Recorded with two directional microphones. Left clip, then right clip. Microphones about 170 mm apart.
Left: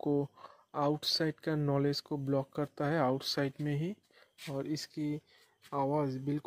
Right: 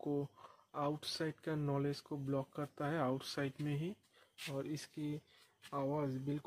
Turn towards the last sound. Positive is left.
turn(degrees=35)  # may be behind; listen again after turning